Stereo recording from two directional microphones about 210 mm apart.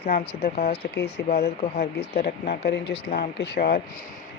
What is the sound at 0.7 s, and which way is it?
Speech, 50° left (ahead or behind).